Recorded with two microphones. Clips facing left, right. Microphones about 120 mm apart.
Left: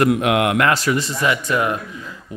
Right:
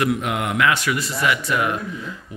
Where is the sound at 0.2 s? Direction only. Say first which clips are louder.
Left 7 dB; 85° left.